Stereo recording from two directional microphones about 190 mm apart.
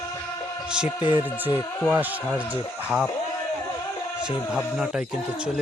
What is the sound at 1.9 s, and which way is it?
Speech, 10° right (ahead or behind).